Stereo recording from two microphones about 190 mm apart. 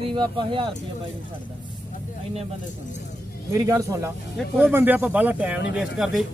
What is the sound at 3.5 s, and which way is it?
Speech, 15° right (ahead or behind).